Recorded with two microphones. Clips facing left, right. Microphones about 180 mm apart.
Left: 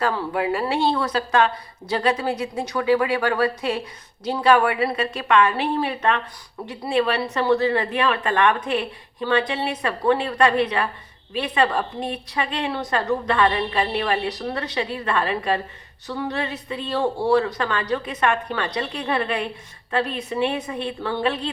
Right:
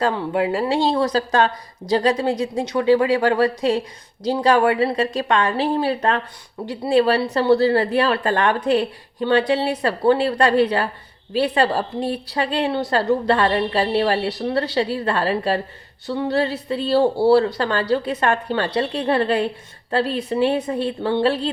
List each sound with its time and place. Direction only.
0.0 s a woman's voice: 25° right (ahead or behind)